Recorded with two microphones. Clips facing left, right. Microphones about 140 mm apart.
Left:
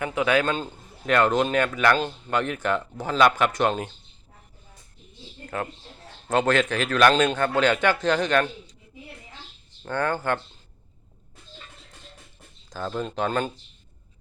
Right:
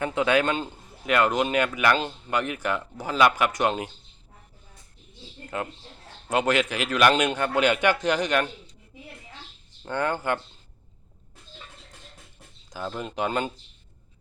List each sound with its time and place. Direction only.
0.0 s a man's voice: 25° right (ahead or behind)
6.2 s a man's voice: 10° right (ahead or behind)
9.8 s a man's voice: 15° right (ahead or behind)
13.0 s a man's voice: 15° right (ahead or behind)